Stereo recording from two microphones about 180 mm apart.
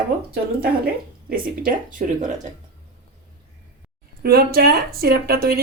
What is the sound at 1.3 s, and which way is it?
Speech, 50° right (ahead or behind).